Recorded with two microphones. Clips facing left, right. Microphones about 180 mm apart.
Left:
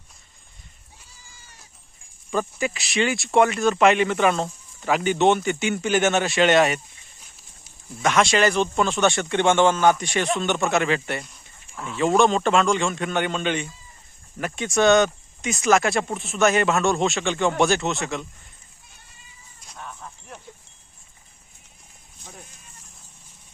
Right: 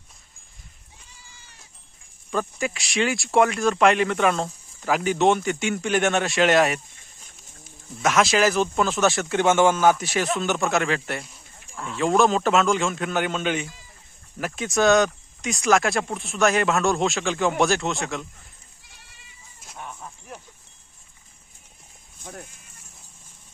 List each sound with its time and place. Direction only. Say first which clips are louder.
2.3 s speech: left 1 dB; centre (ahead or behind)
8.0 s speech: even; centre (ahead or behind)
13.7 s chicken: even; 90° right
14.3 s speech: left 1 dB; centre (ahead or behind)
19.7 s a sound: right 1 dB; 15° right (ahead or behind)